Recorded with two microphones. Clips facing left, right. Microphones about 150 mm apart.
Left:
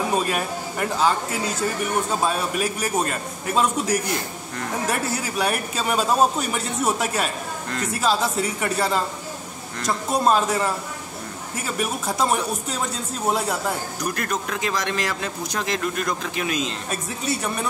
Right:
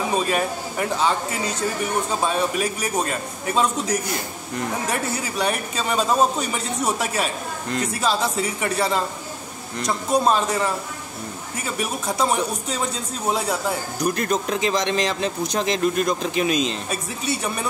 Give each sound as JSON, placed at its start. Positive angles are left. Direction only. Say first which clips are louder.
{"t": 0.1, "sound": "speech", "louder": "right 1 dB", "side_deg": 0}
{"t": 14.0, "sound": "speech", "louder": "right 5 dB", "side_deg": -20}
{"t": 16.9, "sound": "speech", "louder": "even", "side_deg": 0}